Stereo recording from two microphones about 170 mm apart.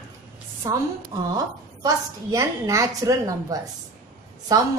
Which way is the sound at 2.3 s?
20° right (ahead or behind).